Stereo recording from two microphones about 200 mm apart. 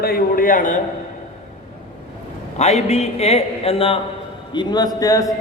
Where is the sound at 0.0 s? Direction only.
45° left (ahead or behind).